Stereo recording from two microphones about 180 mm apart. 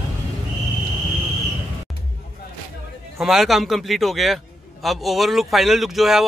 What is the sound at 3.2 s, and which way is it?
Speech, centre (ahead or behind).